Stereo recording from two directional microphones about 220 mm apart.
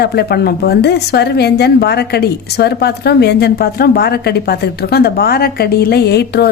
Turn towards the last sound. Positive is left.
turn(degrees=50)  # may be behind; listen again after turning